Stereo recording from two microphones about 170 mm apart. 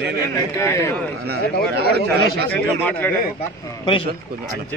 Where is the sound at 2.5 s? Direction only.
10° left (ahead or behind).